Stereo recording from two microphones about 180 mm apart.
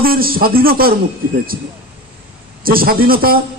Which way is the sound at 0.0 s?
55° right (ahead or behind).